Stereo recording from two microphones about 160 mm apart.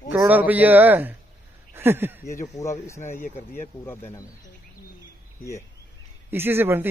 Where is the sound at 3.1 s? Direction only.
50° left (ahead or behind).